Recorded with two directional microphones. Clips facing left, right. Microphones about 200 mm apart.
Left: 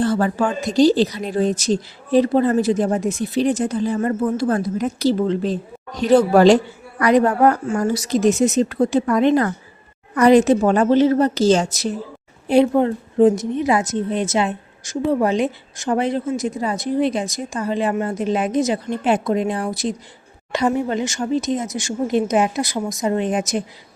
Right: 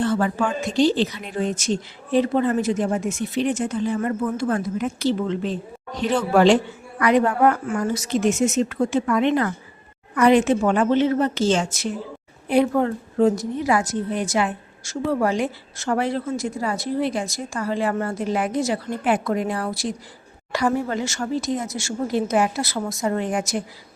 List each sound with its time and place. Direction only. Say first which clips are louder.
0.0 s a woman's voice: left 3 dB; 40° left (ahead or behind)
12.5 s a woman's voice: left 4 dB; 25° left (ahead or behind)